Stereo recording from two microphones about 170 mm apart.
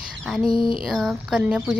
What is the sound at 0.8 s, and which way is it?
Speech, centre (ahead or behind).